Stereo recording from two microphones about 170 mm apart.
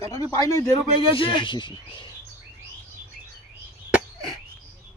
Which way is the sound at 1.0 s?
30° left (ahead or behind).